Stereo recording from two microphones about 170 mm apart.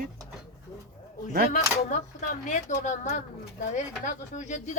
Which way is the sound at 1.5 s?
50° left (ahead or behind).